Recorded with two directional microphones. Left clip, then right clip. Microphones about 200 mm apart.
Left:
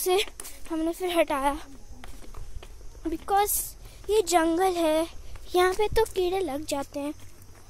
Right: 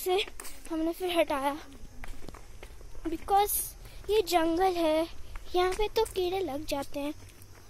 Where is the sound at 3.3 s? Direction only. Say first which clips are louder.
Left 1 dB; 10° left (ahead or behind).